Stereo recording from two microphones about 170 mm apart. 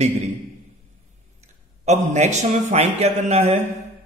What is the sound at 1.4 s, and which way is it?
A man's voice, 45° right (ahead or behind).